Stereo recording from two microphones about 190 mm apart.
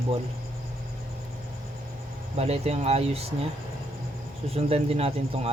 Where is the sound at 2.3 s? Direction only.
30° right (ahead or behind).